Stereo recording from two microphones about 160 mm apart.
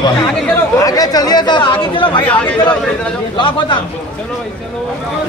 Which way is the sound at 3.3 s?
30° left (ahead or behind).